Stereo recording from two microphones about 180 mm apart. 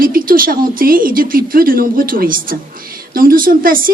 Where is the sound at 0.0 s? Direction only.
50° right (ahead or behind).